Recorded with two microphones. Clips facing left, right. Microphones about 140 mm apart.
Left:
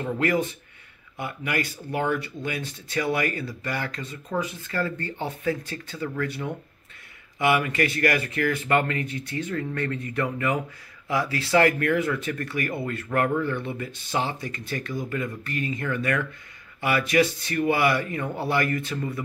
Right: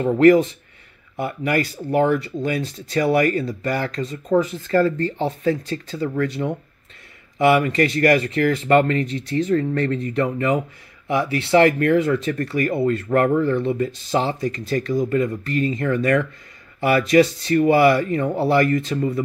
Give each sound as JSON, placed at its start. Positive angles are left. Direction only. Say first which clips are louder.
{"t": 0.0, "sound": "speech", "louder": "right 11 dB", "side_deg": -35}